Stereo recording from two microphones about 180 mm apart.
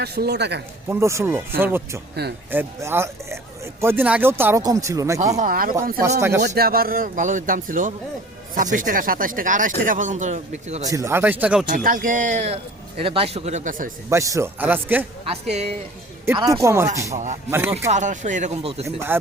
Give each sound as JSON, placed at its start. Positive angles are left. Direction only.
{"t": 0.0, "sound": "speech", "side_deg": -65}
{"t": 0.9, "sound": "speech", "side_deg": -15}
{"t": 5.2, "sound": "speech", "side_deg": -40}
{"t": 6.1, "sound": "speech", "side_deg": -15}
{"t": 6.6, "sound": "speech", "side_deg": -55}
{"t": 10.8, "sound": "speech", "side_deg": -15}
{"t": 11.7, "sound": "speech", "side_deg": -50}
{"t": 14.1, "sound": "speech", "side_deg": -15}
{"t": 15.3, "sound": "speech", "side_deg": -35}
{"t": 16.3, "sound": "speech", "side_deg": -20}
{"t": 17.9, "sound": "speech", "side_deg": -40}
{"t": 19.1, "sound": "speech", "side_deg": -10}